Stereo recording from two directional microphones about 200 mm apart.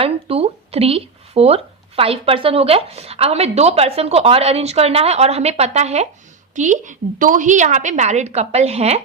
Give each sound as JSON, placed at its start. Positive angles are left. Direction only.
{"t": 0.0, "sound": "speech", "side_deg": -30}